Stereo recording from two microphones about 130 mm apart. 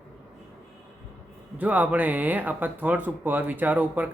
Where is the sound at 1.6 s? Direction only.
15° right (ahead or behind).